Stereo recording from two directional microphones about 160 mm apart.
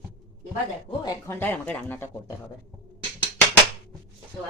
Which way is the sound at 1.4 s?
10° left (ahead or behind).